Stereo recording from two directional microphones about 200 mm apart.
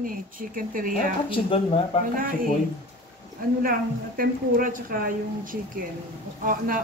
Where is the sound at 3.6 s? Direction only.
45° right (ahead or behind).